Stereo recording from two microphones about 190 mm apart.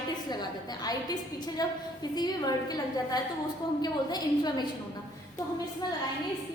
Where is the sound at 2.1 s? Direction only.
20° left (ahead or behind).